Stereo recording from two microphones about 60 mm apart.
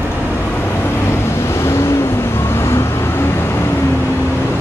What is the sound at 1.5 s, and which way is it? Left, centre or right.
Vehicle, left.